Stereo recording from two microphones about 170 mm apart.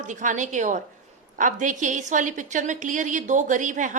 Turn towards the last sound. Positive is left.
turn(degrees=-50)  # may be behind; listen again after turning